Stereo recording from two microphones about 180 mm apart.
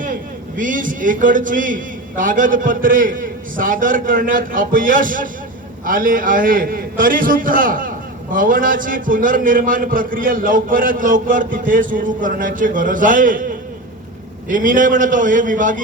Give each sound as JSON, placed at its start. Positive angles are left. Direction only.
{"t": 0.0, "sound": "a man's voice", "side_deg": -50}